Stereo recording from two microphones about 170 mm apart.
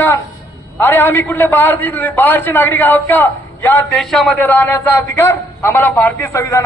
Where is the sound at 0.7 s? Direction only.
15° left (ahead or behind).